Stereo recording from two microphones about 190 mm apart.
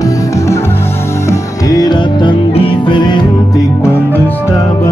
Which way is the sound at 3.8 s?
10° left (ahead or behind).